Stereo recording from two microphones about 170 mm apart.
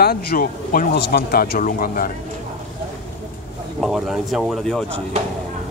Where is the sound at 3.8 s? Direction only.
5° right (ahead or behind).